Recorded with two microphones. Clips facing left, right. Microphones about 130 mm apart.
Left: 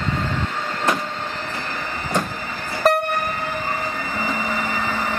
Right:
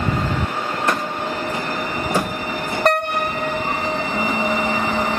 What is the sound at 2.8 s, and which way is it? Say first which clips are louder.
Train: left 1 dB; centre (ahead or behind).